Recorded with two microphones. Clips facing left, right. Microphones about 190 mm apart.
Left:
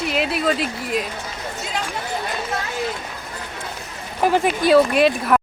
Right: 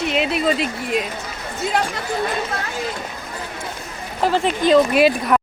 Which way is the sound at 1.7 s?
65° right (ahead or behind).